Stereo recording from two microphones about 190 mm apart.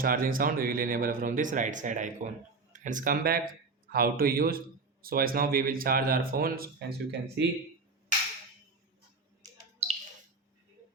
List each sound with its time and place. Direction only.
0.0 s speech: 50° right (ahead or behind); by 7.4 s 65° right (ahead or behind)